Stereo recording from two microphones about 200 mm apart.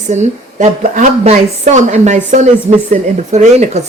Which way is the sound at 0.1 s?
35° right (ahead or behind).